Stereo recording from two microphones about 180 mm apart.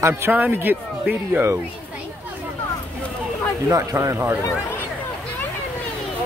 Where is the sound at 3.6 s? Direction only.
15° right (ahead or behind).